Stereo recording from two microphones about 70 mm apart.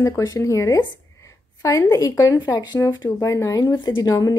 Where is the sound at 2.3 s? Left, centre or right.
Left.